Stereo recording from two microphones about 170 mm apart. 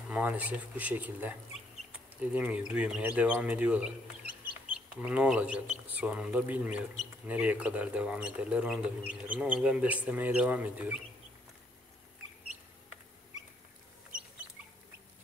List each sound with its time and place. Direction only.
0.1 s speech: 10° right (ahead or behind)
2.3 s speech: 5° right (ahead or behind)
5.0 s speech: 5° right (ahead or behind)
14.1 s rodents: 50° right (ahead or behind)